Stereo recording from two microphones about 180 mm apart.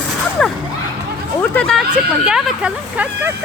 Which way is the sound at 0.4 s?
5° left (ahead or behind).